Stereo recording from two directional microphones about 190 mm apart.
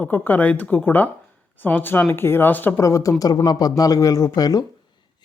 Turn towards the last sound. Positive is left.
turn(degrees=20)  # may be behind; listen again after turning